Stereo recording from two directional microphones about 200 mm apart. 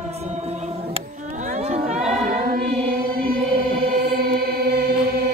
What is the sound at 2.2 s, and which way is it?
Choir, 45° right (ahead or behind).